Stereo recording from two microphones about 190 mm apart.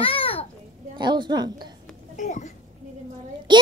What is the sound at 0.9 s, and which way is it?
Speech, 25° right (ahead or behind).